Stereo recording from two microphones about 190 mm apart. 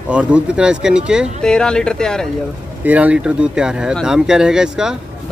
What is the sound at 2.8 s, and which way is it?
Speech, 5° right (ahead or behind).